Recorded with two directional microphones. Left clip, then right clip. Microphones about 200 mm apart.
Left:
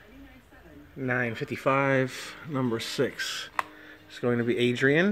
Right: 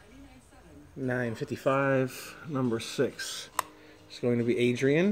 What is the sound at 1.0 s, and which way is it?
Speech, centre (ahead or behind).